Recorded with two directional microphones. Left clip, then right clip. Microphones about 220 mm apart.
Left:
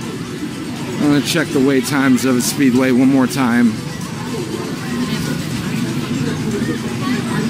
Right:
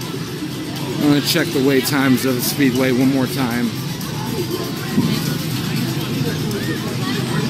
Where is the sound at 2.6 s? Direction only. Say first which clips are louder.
Left 2 dB; 25° left (ahead or behind).